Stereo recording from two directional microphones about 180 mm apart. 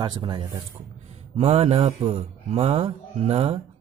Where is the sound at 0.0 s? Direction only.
25° right (ahead or behind).